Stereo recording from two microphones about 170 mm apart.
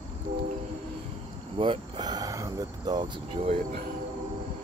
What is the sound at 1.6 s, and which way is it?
Speech, 30° right (ahead or behind).